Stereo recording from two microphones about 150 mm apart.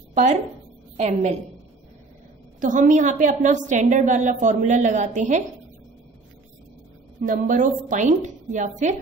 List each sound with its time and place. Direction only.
0.1 s a woman's voice: 50° right (ahead or behind)
2.6 s a woman's voice: 60° right (ahead or behind)
7.2 s a woman's voice: 60° right (ahead or behind)